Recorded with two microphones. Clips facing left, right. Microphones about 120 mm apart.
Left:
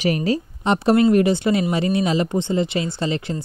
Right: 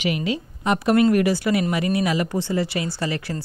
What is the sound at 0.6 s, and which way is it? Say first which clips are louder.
Speech: left 1 dB; 25° left (ahead or behind).